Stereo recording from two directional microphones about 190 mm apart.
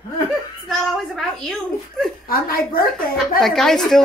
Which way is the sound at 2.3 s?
50° left (ahead or behind).